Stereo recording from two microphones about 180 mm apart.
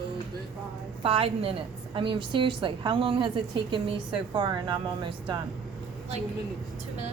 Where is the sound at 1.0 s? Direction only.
30° right (ahead or behind).